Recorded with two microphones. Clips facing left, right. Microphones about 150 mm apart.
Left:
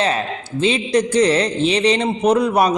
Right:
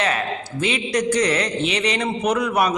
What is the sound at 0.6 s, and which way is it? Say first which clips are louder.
A man's voice: left 5 dB; 30° left (ahead or behind).